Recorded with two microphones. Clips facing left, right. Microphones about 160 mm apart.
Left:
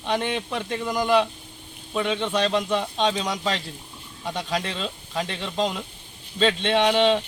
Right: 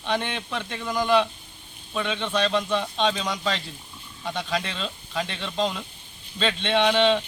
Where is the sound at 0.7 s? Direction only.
10° left (ahead or behind).